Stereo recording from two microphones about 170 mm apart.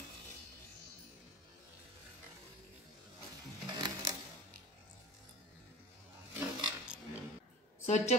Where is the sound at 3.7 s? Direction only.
25° right (ahead or behind).